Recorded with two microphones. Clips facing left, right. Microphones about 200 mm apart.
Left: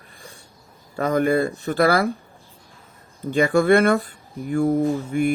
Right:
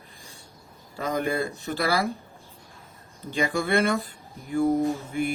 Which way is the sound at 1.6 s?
55° left (ahead or behind).